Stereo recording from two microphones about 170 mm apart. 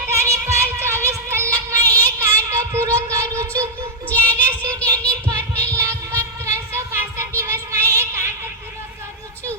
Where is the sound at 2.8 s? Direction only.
20° right (ahead or behind).